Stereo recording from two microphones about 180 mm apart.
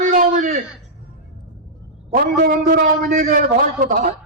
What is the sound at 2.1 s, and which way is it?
A man's voice, 50° right (ahead or behind).